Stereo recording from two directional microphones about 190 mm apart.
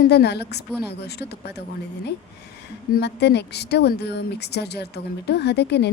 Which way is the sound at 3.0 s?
60° left (ahead or behind).